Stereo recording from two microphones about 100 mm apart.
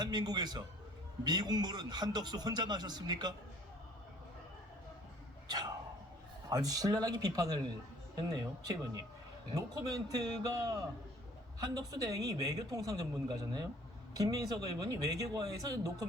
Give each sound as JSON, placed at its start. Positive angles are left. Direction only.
{"t": 0.0, "sound": "a man's voice", "side_deg": -45}
{"t": 5.5, "sound": "a man's voice", "side_deg": -45}
{"t": 8.6, "sound": "a man's voice", "side_deg": -35}